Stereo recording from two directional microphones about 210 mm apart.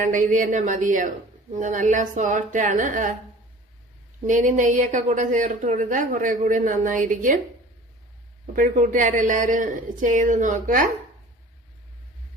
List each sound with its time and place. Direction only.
0.0 s speech: 40° right (ahead or behind)
4.3 s speech: 35° right (ahead or behind)
8.5 s speech: 35° right (ahead or behind)